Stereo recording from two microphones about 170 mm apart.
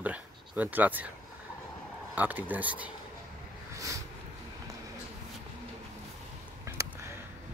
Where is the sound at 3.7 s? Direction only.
20° right (ahead or behind).